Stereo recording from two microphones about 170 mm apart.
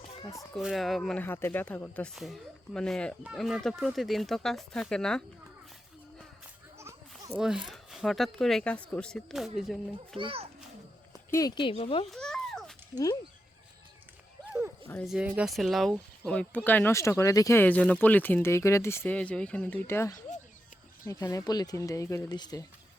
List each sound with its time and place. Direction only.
0.2 s speech: 20° left (ahead or behind)
0.5 s speech: centre (ahead or behind)
6.7 s a sound: 15° right (ahead or behind)
7.3 s speech: 5° right (ahead or behind)
10.2 s a child's voice: 35° right (ahead or behind)
11.3 s speech: 20° left (ahead or behind)
12.1 s a sound: 5° left (ahead or behind)
12.9 s speech: 20° left (ahead or behind)
15.0 s speech: 5° right (ahead or behind); by 22.6 s 25° left (ahead or behind)